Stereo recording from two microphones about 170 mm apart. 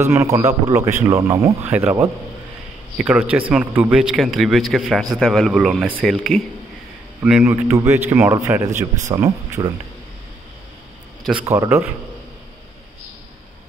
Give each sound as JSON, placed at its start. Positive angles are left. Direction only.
{"t": 0.0, "sound": "a man's voice", "side_deg": -15}
{"t": 7.2, "sound": "a man's voice", "side_deg": -10}
{"t": 11.4, "sound": "a man's voice", "side_deg": -15}